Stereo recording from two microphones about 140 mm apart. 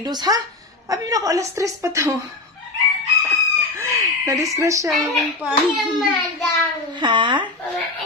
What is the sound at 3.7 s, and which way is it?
Squawk, 20° right (ahead or behind).